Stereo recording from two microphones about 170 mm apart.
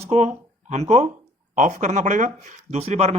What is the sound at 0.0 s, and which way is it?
Speech, 40° right (ahead or behind).